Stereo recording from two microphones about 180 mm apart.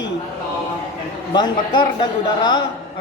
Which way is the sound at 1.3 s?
25° left (ahead or behind).